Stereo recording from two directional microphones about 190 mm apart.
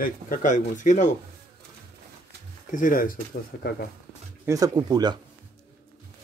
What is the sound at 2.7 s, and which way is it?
Speech, 45° left (ahead or behind).